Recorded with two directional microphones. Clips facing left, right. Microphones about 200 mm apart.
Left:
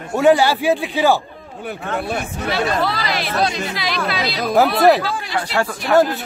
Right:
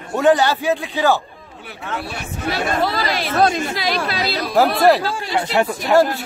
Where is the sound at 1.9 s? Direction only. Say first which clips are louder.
Left 4 dB; 50° left (ahead or behind).